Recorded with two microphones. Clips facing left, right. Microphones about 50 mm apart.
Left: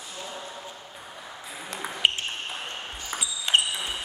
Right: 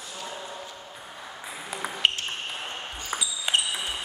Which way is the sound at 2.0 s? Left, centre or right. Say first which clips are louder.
Left 1 dB; centre.